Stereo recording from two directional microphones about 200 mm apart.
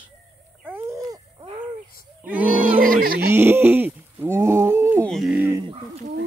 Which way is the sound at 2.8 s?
45° right (ahead or behind).